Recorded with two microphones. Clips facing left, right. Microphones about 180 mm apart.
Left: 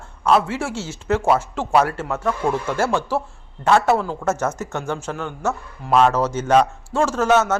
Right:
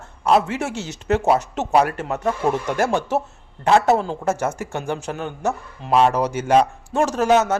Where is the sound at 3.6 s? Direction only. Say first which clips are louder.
Right 1 dB; 35° right (ahead or behind).